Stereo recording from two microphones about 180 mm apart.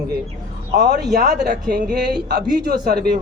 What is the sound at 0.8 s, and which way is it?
A man's voice, 65° right (ahead or behind).